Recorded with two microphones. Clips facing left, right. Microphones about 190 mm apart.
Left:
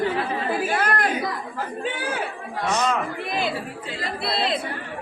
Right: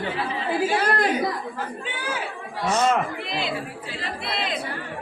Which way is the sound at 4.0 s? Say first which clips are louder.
Left 4 dB; 35° left (ahead or behind).